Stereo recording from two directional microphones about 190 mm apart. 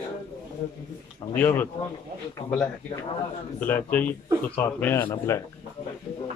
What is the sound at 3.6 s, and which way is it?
Speech, 10° left (ahead or behind).